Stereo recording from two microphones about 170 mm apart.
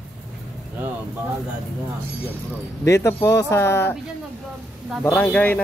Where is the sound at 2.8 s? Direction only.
15° left (ahead or behind).